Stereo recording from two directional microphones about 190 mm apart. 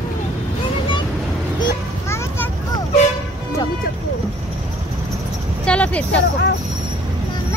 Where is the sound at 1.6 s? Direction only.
15° left (ahead or behind).